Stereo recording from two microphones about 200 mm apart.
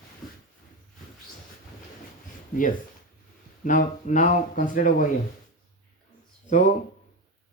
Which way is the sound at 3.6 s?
40° left (ahead or behind).